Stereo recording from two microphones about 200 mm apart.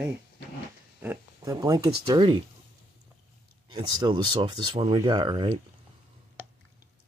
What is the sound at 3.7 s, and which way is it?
Speech, 25° right (ahead or behind).